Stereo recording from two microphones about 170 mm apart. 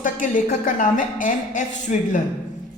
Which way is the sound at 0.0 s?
50° left (ahead or behind).